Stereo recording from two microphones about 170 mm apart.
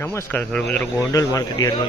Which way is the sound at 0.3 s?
10° left (ahead or behind).